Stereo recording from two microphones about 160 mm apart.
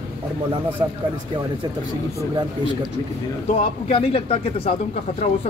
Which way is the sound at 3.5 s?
40° left (ahead or behind).